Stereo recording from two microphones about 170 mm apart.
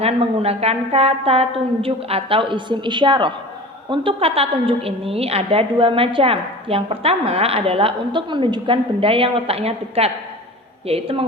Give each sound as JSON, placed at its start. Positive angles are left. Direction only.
{"t": 0.0, "sound": "a woman's voice", "side_deg": -35}